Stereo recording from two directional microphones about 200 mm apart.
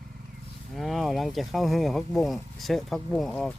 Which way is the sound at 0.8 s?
Centre (ahead or behind).